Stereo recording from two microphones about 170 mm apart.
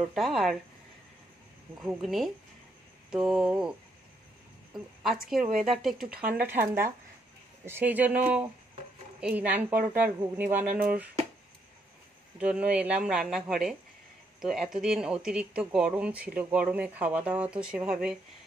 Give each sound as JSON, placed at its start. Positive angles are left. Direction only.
{"t": 0.0, "sound": "speech", "side_deg": 0}
{"t": 1.8, "sound": "speech", "side_deg": 0}
{"t": 4.7, "sound": "a woman's voice", "side_deg": 0}
{"t": 6.5, "sound": "speech", "side_deg": -60}
{"t": 7.6, "sound": "speech", "side_deg": -10}
{"t": 9.2, "sound": "speech", "side_deg": -10}
{"t": 10.7, "sound": "speech", "side_deg": -55}
{"t": 12.4, "sound": "speech", "side_deg": -5}